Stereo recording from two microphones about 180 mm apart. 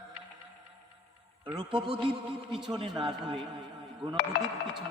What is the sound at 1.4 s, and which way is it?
A man's voice, 25° right (ahead or behind).